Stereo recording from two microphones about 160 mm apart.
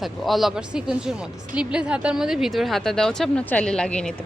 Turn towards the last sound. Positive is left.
turn(degrees=5)  # may be behind; listen again after turning